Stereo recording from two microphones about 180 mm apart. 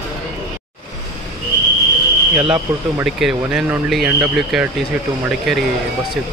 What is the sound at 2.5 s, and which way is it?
Speech, 5° right (ahead or behind).